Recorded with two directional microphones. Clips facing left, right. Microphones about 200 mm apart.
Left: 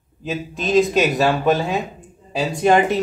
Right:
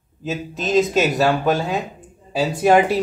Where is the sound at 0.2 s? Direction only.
Centre (ahead or behind).